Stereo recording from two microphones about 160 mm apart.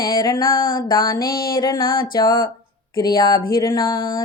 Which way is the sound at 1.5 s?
30° left (ahead or behind).